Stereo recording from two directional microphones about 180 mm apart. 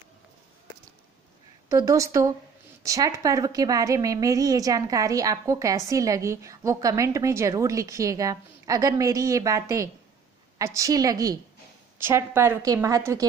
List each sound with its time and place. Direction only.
1.7 s a woman's voice: 15° right (ahead or behind)